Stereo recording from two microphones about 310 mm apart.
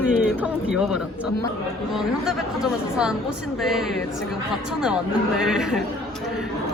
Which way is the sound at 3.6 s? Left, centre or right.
Centre.